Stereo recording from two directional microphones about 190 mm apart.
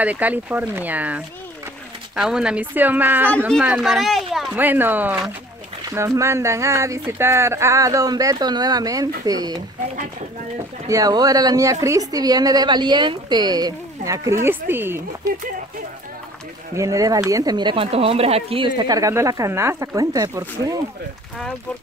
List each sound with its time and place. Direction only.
0.0 s speech: 10° right (ahead or behind)
3.3 s speech: 5° left (ahead or behind); by 9.6 s 20° right (ahead or behind)
10.9 s a woman's voice: 20° right (ahead or behind)
16.7 s a woman's voice: 15° right (ahead or behind)